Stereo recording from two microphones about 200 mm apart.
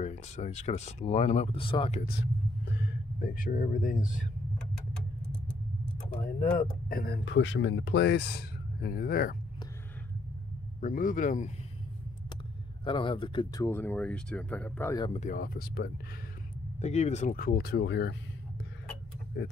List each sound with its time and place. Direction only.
0.0 s speech: 35° left (ahead or behind)
2.6 s speech: 60° left (ahead or behind); by 4.2 s 40° left (ahead or behind)
6.9 s speech: 50° left (ahead or behind)
10.8 s speech: 40° left (ahead or behind)
12.8 s speech: 25° left (ahead or behind)
13.7 s speech: 10° left (ahead or behind)
15.1 s speech: 40° left (ahead or behind)
16.8 s speech: 35° left (ahead or behind); by 18.1 s 60° left (ahead or behind)
19.4 s speech: 65° left (ahead or behind)